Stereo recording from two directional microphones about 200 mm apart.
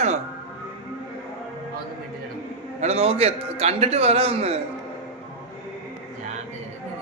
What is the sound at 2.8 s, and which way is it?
A man's voice, 30° right (ahead or behind).